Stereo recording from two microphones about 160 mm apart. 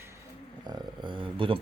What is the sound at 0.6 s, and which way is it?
Speech, 30° right (ahead or behind).